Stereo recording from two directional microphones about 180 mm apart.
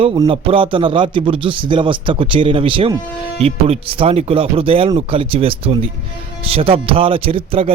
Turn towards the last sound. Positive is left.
turn(degrees=-30)  # may be behind; listen again after turning